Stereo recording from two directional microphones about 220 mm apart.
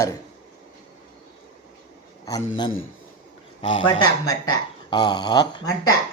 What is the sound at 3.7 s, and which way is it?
Speech, 20° left (ahead or behind).